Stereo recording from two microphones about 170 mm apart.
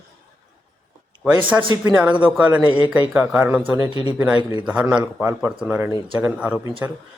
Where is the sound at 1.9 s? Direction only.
10° right (ahead or behind).